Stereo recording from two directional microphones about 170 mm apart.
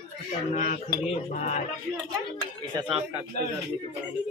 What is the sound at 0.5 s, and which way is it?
Speech, 45° left (ahead or behind).